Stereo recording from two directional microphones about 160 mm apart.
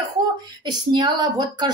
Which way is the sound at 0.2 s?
25° right (ahead or behind).